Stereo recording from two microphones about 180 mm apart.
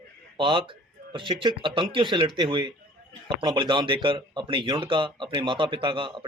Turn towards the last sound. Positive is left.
turn(degrees=-30)  # may be behind; listen again after turning